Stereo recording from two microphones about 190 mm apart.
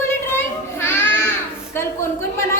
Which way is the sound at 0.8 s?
10° left (ahead or behind).